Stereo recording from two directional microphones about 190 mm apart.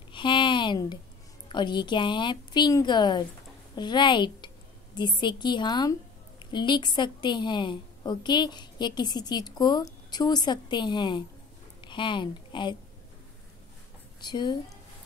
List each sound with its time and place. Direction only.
0.1 s a sound: 25° left (ahead or behind)
1.5 s a woman's voice: 25° left (ahead or behind)
14.2 s a woman's voice: 25° left (ahead or behind)